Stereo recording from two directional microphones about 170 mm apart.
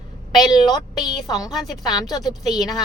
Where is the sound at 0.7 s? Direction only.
20° left (ahead or behind).